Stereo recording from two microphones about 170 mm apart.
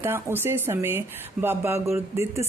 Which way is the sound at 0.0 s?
15° right (ahead or behind).